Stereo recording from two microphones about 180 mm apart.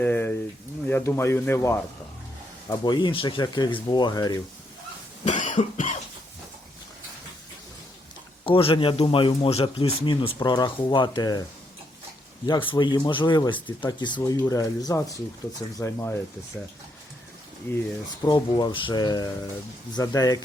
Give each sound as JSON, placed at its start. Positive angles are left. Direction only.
{"t": 0.0, "sound": "speech", "side_deg": 10}
{"t": 5.2, "sound": "cough", "side_deg": 45}
{"t": 8.4, "sound": "speech", "side_deg": 30}
{"t": 12.5, "sound": "speech", "side_deg": 25}
{"t": 18.3, "sound": "speech", "side_deg": 25}